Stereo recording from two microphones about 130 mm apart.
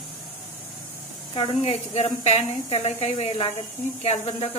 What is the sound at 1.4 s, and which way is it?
Speech, 55° left (ahead or behind).